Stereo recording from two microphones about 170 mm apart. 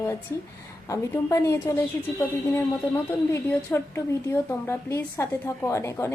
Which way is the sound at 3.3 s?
15° left (ahead or behind).